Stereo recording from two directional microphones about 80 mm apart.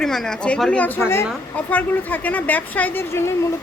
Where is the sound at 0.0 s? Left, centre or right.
Centre.